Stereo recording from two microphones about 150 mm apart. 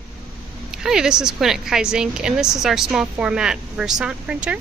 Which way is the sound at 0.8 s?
5° right (ahead or behind).